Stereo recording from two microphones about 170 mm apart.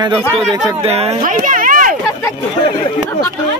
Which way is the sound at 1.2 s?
55° right (ahead or behind).